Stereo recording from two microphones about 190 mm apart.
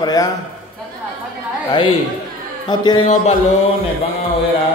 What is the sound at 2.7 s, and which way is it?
Speech, 25° left (ahead or behind).